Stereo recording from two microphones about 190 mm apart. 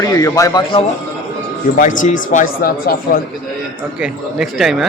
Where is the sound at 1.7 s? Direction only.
45° left (ahead or behind).